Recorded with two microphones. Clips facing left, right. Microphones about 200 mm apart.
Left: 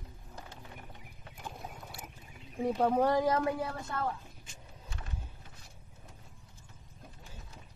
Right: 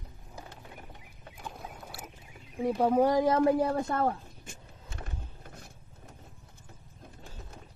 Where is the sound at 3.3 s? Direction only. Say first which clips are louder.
Right 6 dB; 35° right (ahead or behind).